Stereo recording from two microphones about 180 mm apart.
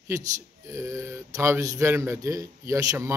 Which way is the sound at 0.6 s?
15° right (ahead or behind).